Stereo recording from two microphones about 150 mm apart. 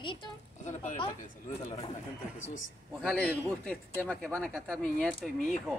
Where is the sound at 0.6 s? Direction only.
55° left (ahead or behind).